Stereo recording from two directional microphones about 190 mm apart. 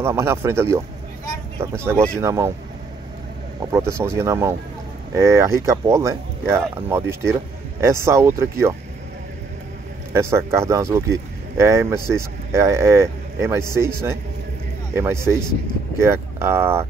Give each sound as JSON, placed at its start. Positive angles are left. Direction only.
{"t": 0.0, "sound": "speech", "side_deg": -15}
{"t": 3.7, "sound": "speech", "side_deg": -15}
{"t": 10.1, "sound": "speech", "side_deg": -15}